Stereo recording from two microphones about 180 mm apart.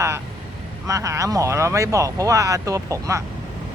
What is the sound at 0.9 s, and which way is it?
Speech, 15° right (ahead or behind).